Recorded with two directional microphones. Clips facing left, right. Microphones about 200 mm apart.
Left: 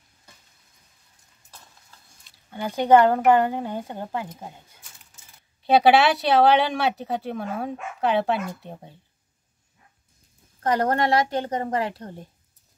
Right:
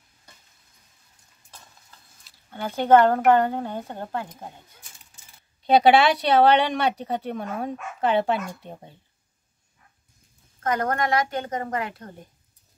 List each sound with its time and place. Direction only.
2.5 s speech: 15° left (ahead or behind)
5.6 s speech: 5° left (ahead or behind)
10.6 s a woman's voice: 30° left (ahead or behind)